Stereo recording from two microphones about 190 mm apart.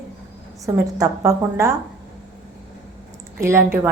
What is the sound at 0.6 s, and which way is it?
A woman's voice, 15° right (ahead or behind).